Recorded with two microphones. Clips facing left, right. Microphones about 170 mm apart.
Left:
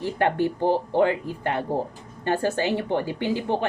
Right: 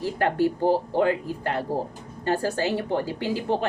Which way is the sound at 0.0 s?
20° left (ahead or behind).